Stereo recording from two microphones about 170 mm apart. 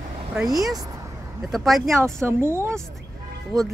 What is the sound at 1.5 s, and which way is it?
Speech, centre (ahead or behind).